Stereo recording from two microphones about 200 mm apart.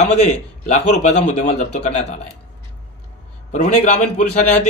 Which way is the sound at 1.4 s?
35° left (ahead or behind).